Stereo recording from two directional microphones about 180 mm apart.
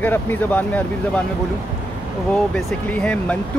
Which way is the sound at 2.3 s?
5° left (ahead or behind).